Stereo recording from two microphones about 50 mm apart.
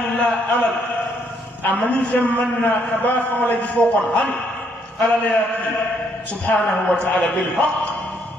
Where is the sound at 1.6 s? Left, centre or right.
Left.